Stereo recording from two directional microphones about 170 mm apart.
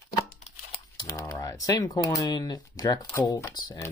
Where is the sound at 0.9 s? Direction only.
20° left (ahead or behind).